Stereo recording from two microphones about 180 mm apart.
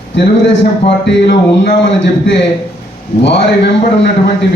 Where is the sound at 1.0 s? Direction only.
70° left (ahead or behind).